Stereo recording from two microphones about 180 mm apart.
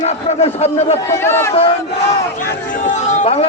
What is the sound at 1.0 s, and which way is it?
Speech, 15° left (ahead or behind).